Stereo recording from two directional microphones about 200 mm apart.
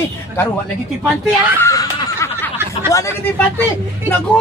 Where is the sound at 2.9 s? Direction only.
15° left (ahead or behind).